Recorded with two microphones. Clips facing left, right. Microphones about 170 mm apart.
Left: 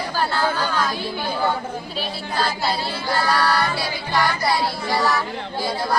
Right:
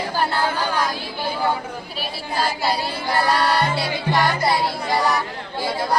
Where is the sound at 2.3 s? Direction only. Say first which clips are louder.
Right 1 dB; 10° right (ahead or behind).